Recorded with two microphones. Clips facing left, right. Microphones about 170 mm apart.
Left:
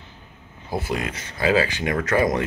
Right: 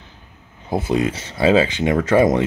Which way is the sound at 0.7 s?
20° right (ahead or behind).